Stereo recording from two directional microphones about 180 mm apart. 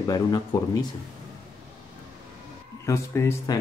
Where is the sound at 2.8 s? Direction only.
15° left (ahead or behind).